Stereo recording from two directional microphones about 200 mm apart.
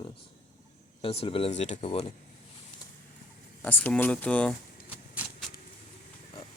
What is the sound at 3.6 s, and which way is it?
Speech, 10° left (ahead or behind).